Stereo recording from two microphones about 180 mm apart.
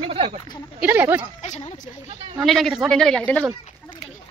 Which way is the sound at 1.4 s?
35° left (ahead or behind).